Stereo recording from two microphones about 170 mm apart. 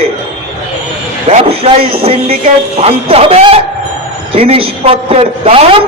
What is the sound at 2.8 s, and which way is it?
Speech, 35° right (ahead or behind).